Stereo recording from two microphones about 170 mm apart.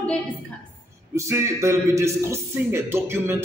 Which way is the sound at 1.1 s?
15° right (ahead or behind).